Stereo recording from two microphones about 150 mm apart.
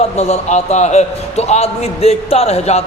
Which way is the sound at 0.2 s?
45° left (ahead or behind).